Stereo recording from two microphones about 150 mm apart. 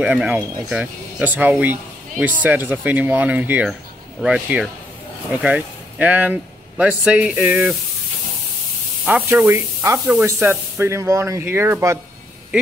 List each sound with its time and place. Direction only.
0.0 s speech: 10° right (ahead or behind)
9.0 s speech: 10° right (ahead or behind)